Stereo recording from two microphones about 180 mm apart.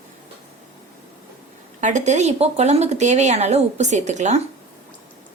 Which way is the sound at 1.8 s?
40° right (ahead or behind).